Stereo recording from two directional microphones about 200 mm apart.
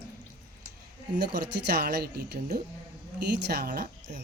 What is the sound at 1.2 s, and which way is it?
Speech, 55° right (ahead or behind).